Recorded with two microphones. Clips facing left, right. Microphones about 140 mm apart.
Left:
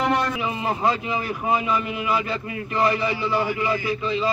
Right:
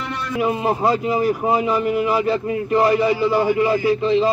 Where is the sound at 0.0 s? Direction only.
85° left.